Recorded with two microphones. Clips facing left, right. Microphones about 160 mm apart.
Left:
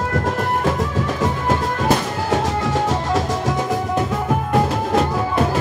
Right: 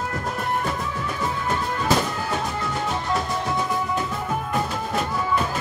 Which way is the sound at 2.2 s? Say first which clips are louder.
Left 7 dB; 90° left.